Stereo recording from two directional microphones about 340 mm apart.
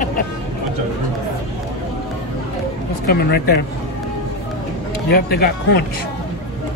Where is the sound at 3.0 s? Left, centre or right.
Left.